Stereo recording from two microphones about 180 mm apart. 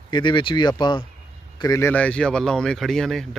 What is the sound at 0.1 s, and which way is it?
Speech, 25° left (ahead or behind).